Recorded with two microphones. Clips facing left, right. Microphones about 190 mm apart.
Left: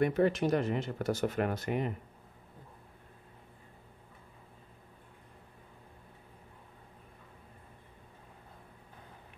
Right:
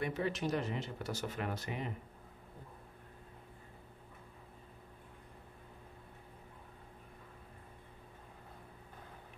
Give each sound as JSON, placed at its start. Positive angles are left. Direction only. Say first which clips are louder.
{"t": 0.0, "sound": "speech", "louder": "left 9 dB", "side_deg": 55}